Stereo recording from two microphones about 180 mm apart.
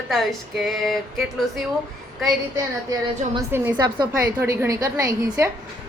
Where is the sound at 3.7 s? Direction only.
20° right (ahead or behind).